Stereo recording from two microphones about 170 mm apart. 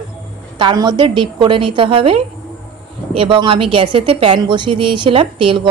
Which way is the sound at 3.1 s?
30° right (ahead or behind).